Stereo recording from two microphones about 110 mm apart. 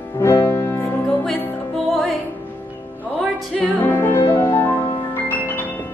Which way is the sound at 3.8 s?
20° left (ahead or behind).